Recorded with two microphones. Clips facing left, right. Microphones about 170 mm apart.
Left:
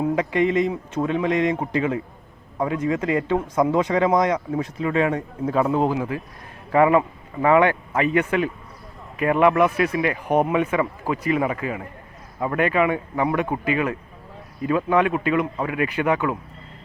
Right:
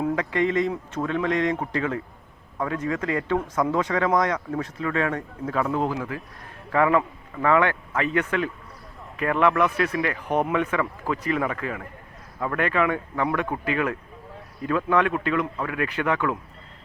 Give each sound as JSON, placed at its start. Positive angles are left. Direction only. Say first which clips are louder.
{"t": 0.2, "sound": "speech", "louder": "left 3 dB", "side_deg": 15}